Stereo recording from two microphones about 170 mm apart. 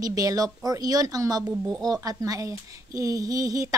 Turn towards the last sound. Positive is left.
turn(degrees=-20)  # may be behind; listen again after turning